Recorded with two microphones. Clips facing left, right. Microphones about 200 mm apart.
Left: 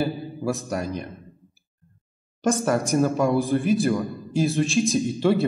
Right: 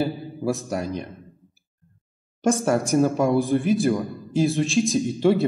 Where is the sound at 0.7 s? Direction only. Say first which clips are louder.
Right 1 dB; 25° right (ahead or behind).